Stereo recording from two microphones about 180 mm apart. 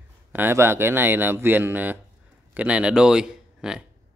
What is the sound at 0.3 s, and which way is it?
Speech, 10° right (ahead or behind).